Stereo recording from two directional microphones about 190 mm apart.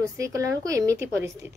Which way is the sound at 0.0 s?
15° right (ahead or behind).